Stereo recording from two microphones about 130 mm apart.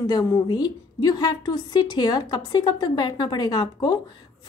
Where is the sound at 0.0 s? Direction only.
30° left (ahead or behind).